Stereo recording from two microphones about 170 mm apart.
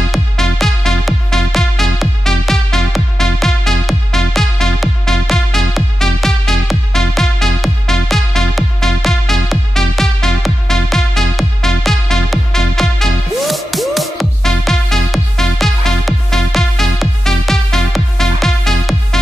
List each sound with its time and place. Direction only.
0.1 s music: centre (ahead or behind)